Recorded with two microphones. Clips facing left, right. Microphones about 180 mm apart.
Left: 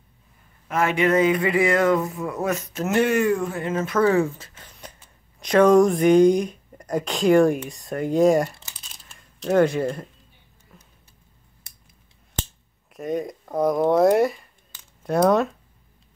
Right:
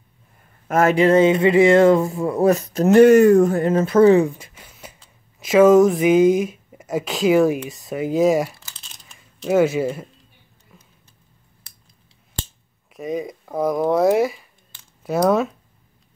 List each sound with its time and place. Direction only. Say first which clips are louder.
0.7 s speech: right 5 dB; 40° right (ahead or behind); by 10.0 s 5° right (ahead or behind)
10.7 s a sound: even; centre (ahead or behind)
12.9 s speech: right 1 dB; centre (ahead or behind)